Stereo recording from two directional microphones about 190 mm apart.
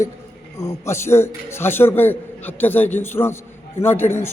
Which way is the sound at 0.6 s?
15° left (ahead or behind).